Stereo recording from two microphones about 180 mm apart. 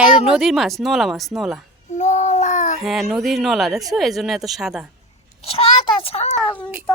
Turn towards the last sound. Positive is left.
turn(degrees=5)  # may be behind; listen again after turning